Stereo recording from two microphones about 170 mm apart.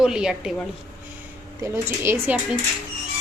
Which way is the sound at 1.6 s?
15° right (ahead or behind).